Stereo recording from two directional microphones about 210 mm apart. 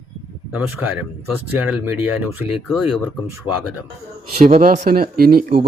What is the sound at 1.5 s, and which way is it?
Speech, 10° right (ahead or behind).